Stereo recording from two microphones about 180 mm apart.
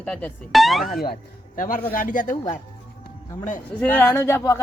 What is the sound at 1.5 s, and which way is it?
Speech, 50° left (ahead or behind).